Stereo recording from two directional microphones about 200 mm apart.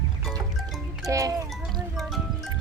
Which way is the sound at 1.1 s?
15° right (ahead or behind).